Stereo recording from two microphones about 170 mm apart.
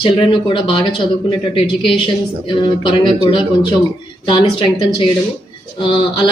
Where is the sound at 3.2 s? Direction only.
30° left (ahead or behind).